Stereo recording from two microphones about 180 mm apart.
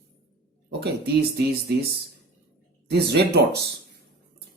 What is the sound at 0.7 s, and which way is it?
Speech, 65° right (ahead or behind).